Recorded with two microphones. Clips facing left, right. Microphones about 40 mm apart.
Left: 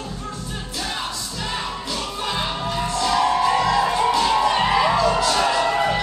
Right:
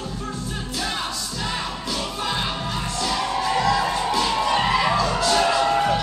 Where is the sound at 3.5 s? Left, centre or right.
Centre.